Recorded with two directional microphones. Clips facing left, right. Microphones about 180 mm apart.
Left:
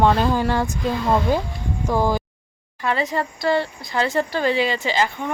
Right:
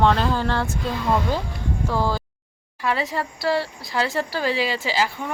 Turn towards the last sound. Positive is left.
turn(degrees=-5)  # may be behind; listen again after turning